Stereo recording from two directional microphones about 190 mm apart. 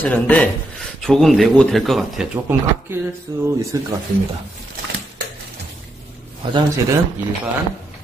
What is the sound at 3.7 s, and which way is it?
Speech, 15° right (ahead or behind).